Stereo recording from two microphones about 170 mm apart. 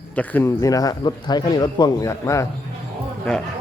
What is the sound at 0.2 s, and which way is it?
A man's voice, 15° left (ahead or behind).